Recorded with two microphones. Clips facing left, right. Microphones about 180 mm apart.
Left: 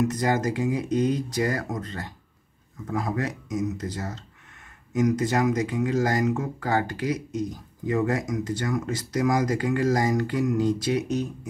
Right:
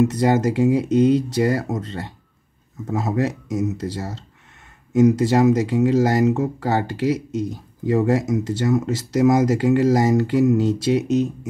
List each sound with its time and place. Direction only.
0.0 s speech: 25° right (ahead or behind)